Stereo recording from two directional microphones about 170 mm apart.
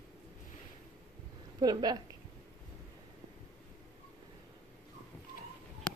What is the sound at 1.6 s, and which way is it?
Speech, 25° right (ahead or behind).